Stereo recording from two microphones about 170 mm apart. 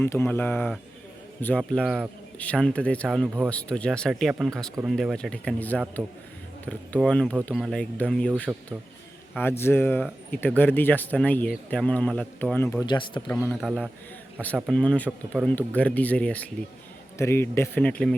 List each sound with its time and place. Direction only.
0.0 s speech: 15° left (ahead or behind)
9.4 s speech: 15° left (ahead or behind)
12.8 s speech: 25° left (ahead or behind)
13.2 s speech: 10° left (ahead or behind)
13.6 s speech: centre (ahead or behind)